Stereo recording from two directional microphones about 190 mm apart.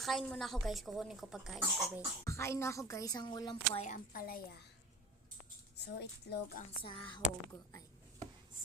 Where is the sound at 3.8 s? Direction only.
45° left (ahead or behind).